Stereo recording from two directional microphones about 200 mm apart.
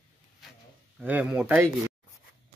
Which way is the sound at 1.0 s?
5° right (ahead or behind).